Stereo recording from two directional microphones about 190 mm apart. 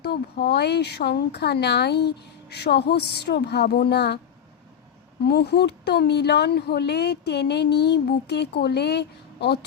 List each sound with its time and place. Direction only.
0.0 s speech: 60° left (ahead or behind)
5.2 s speech: 55° left (ahead or behind)